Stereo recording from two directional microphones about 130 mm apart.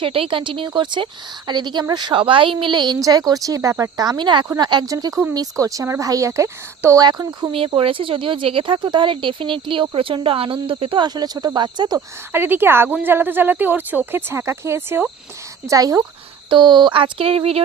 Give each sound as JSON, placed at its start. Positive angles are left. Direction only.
{"t": 0.0, "sound": "speech", "side_deg": -45}
{"t": 7.5, "sound": "speech", "side_deg": -45}
{"t": 11.9, "sound": "speech", "side_deg": -15}